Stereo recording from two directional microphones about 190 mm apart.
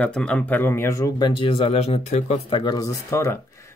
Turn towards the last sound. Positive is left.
turn(degrees=15)  # may be behind; listen again after turning